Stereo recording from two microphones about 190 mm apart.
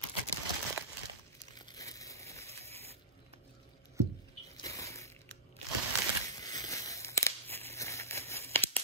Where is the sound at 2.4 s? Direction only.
35° right (ahead or behind).